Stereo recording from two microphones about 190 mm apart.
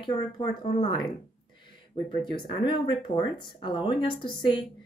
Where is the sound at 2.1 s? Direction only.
25° left (ahead or behind).